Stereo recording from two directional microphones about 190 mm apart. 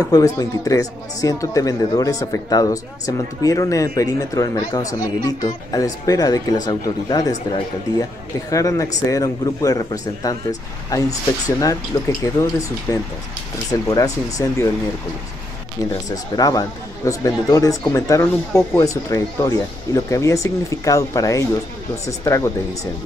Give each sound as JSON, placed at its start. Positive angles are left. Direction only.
{"t": 0.1, "sound": "speech", "side_deg": 20}
{"t": 11.4, "sound": "speech", "side_deg": 20}
{"t": 15.9, "sound": "speech", "side_deg": 20}